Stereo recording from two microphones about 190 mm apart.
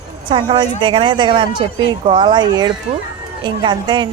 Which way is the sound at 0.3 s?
25° right (ahead or behind).